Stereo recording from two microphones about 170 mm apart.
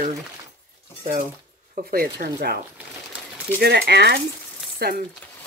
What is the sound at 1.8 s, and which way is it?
Speech, 60° right (ahead or behind).